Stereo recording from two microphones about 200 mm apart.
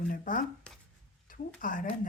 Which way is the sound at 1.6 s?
45° left (ahead or behind).